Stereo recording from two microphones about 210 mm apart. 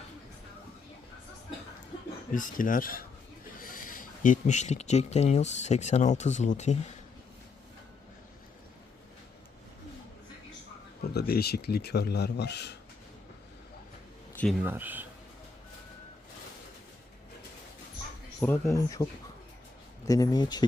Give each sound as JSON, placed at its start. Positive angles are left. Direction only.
{"t": 2.3, "sound": "speech", "side_deg": 40}
{"t": 11.0, "sound": "speech", "side_deg": 50}
{"t": 14.6, "sound": "speech", "side_deg": -10}
{"t": 18.3, "sound": "speech", "side_deg": 10}
{"t": 20.1, "sound": "speech", "side_deg": 15}